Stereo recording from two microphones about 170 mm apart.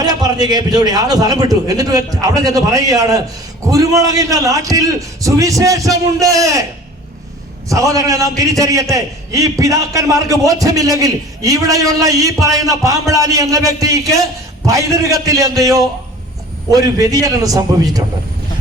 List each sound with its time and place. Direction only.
0.0 s a man's voice: 25° right (ahead or behind)
7.7 s a man's voice: 20° right (ahead or behind)